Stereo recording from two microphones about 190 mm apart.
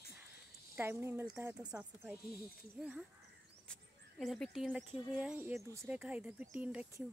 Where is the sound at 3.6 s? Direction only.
5° left (ahead or behind).